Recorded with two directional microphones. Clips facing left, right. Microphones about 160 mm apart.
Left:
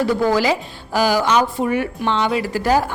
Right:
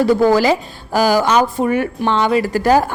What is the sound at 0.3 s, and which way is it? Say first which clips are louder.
A woman's voice: right 4 dB; 45° right (ahead or behind).